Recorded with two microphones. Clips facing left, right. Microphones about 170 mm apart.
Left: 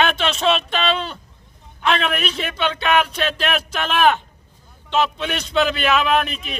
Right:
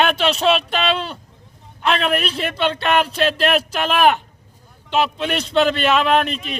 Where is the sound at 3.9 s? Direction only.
5° right (ahead or behind).